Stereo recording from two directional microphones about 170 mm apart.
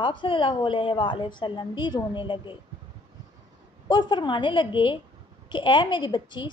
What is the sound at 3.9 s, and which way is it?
A woman's voice, 25° left (ahead or behind).